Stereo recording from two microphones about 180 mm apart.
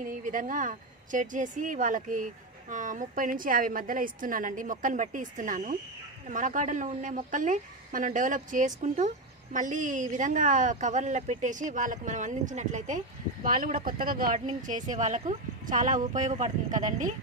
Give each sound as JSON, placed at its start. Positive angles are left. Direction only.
{"t": 0.0, "sound": "a woman's voice", "side_deg": -50}